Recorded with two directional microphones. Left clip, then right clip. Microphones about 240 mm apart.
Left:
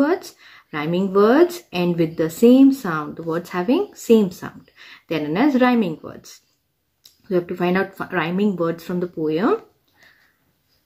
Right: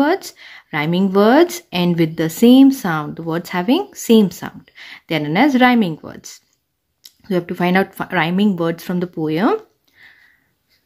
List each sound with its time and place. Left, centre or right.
0.0 s a woman's voice: right